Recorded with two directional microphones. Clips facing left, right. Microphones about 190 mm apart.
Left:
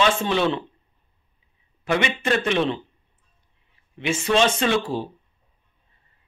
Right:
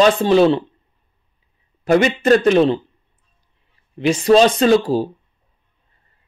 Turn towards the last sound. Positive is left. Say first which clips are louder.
# right 8 dB
turn(degrees=-35)  # may be behind; listen again after turning